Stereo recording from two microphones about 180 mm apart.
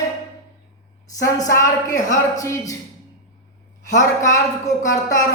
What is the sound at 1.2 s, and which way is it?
Speech, 15° left (ahead or behind).